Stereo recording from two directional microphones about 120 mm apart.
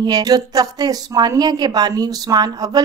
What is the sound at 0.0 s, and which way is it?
A woman's voice, 35° right (ahead or behind).